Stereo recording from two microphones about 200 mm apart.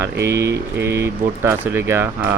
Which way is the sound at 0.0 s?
10° right (ahead or behind).